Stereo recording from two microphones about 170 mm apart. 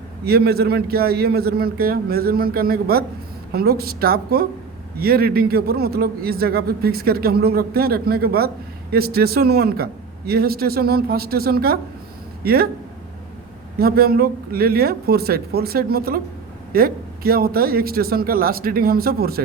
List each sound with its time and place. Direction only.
0.3 s a man's voice: 65° right (ahead or behind)
13.7 s a man's voice: 65° right (ahead or behind)